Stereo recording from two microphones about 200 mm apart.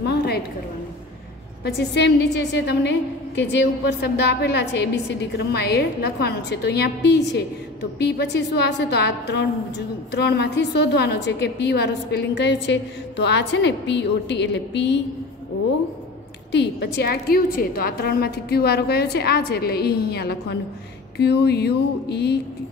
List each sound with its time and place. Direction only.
0.0 s a sound: 55° left (ahead or behind)
1.6 s a woman's voice: 55° left (ahead or behind)
16.5 s a woman's voice: 55° left (ahead or behind)